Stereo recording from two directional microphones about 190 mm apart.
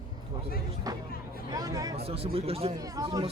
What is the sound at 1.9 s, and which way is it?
Speech, 30° right (ahead or behind).